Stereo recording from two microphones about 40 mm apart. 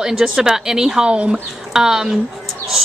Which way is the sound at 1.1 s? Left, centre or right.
Right.